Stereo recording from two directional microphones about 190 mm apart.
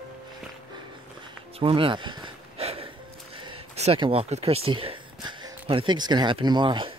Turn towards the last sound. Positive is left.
turn(degrees=-25)  # may be behind; listen again after turning